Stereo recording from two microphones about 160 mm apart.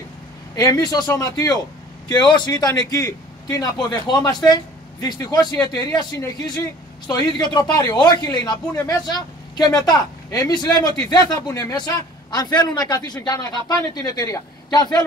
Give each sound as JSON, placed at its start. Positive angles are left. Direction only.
{"t": 0.6, "sound": "speech", "side_deg": 25}